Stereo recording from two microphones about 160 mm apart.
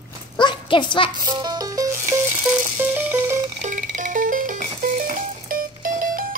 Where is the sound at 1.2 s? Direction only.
25° right (ahead or behind).